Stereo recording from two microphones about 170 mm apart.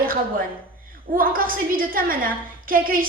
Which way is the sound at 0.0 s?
60° right (ahead or behind).